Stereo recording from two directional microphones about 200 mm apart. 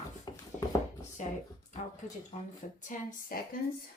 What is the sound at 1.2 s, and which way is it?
Speech, 40° left (ahead or behind).